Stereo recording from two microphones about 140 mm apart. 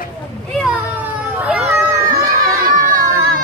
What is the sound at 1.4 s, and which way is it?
Children playing, 10° right (ahead or behind).